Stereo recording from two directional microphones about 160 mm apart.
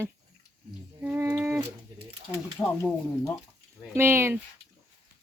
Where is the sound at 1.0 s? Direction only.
15° right (ahead or behind).